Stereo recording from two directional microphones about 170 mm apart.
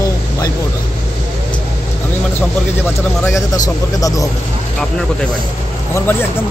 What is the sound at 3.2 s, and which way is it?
A man's voice, 20° left (ahead or behind).